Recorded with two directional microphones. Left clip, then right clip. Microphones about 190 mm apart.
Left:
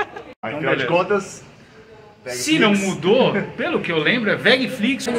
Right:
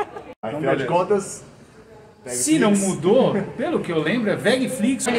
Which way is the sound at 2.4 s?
20° right (ahead or behind).